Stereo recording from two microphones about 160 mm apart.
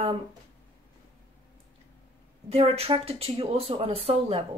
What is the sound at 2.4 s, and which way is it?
Speech, 40° right (ahead or behind).